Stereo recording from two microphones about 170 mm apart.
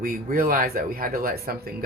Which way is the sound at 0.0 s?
55° right (ahead or behind).